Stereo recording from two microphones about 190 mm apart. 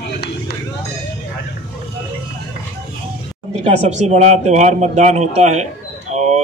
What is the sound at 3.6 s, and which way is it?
Speech, 35° right (ahead or behind).